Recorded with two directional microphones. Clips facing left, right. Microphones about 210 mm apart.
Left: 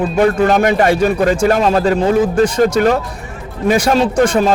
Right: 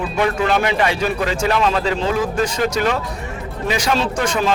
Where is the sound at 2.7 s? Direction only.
50° left (ahead or behind).